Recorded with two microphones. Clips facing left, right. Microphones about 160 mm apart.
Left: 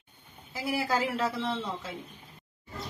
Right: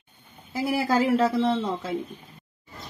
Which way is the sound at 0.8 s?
45° right (ahead or behind).